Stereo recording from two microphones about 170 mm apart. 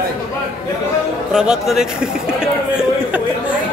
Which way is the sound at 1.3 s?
5° right (ahead or behind).